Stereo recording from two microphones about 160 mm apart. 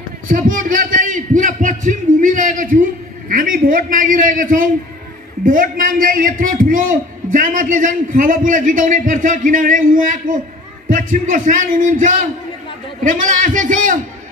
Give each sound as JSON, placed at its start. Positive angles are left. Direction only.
{"t": 0.3, "sound": "a man's voice", "side_deg": -55}